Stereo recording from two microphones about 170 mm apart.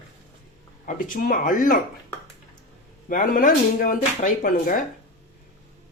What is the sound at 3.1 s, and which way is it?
Speech, 50° left (ahead or behind).